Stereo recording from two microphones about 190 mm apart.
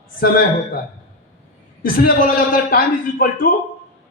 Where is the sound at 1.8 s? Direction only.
50° left (ahead or behind).